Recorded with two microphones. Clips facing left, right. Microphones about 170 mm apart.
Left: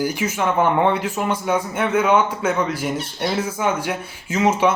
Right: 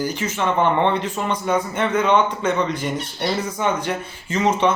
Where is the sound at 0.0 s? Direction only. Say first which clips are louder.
Left 1 dB; 10° left (ahead or behind).